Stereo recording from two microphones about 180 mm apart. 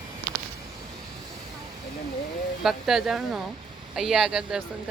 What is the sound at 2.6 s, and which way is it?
Speech, centre (ahead or behind).